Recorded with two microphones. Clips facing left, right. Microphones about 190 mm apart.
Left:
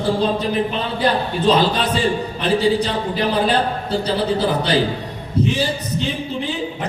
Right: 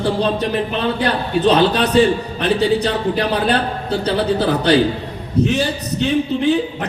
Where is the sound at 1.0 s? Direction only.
65° right (ahead or behind).